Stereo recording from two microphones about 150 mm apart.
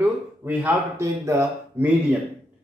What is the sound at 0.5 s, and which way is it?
Speech, 10° right (ahead or behind).